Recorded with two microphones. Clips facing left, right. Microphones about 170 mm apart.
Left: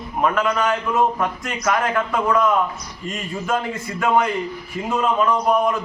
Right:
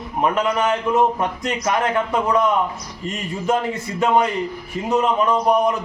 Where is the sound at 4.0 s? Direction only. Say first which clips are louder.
Right 1 dB; 20° right (ahead or behind).